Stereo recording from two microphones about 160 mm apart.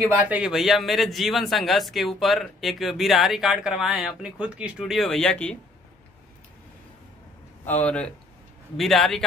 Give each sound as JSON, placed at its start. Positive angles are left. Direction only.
{"t": 0.1, "sound": "a man's voice", "side_deg": -5}
{"t": 7.6, "sound": "a man's voice", "side_deg": 10}